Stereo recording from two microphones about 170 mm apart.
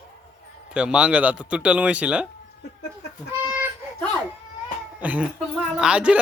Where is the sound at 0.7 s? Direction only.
5° right (ahead or behind).